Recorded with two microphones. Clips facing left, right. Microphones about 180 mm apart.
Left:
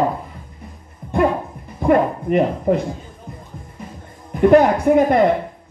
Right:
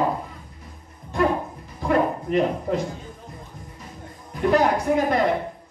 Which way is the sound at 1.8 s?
55° left (ahead or behind).